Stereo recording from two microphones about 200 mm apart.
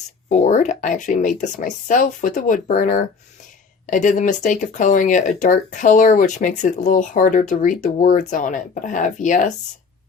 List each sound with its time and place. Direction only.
0.3 s speech: 35° left (ahead or behind)